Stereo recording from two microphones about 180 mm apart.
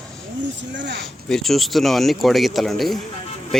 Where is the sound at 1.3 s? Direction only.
Centre (ahead or behind).